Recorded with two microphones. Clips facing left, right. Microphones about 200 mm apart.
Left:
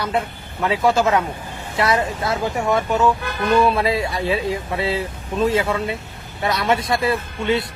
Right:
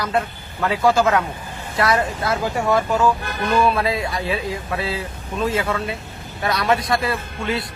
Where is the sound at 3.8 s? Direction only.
25° left (ahead or behind).